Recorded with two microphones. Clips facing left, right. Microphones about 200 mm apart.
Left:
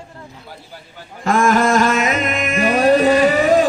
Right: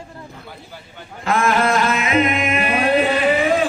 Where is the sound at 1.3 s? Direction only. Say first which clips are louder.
Left 3 dB; 45° left (ahead or behind).